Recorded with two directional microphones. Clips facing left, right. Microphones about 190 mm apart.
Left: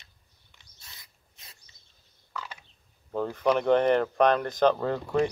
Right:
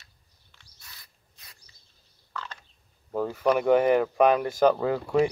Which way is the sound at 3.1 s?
5° right (ahead or behind).